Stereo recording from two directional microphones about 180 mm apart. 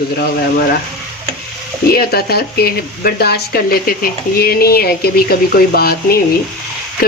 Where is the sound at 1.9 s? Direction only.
60° left (ahead or behind).